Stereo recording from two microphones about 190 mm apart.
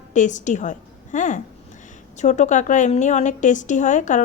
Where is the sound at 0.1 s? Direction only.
40° left (ahead or behind).